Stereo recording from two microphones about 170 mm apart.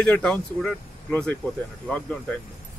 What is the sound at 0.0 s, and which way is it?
A man's voice, 5° left (ahead or behind).